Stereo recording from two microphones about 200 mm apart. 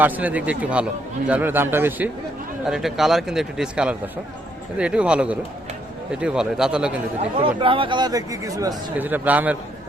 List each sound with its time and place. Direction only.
0.0 s speech: 10° right (ahead or behind)
7.2 s speech: 25° right (ahead or behind); by 9.6 s 10° right (ahead or behind)